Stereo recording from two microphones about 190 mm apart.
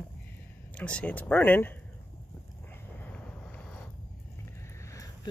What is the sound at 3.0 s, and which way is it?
Vehicle, 5° left (ahead or behind).